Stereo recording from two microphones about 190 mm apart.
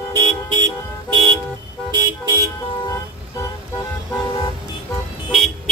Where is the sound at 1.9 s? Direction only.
20° right (ahead or behind).